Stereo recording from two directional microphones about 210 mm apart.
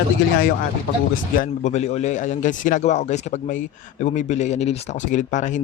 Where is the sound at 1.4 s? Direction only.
35° left (ahead or behind).